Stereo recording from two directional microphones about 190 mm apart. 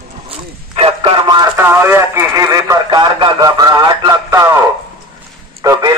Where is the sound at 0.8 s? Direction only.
30° right (ahead or behind).